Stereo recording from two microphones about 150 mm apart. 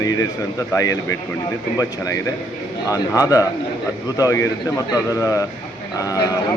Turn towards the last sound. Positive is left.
turn(degrees=25)  # may be behind; listen again after turning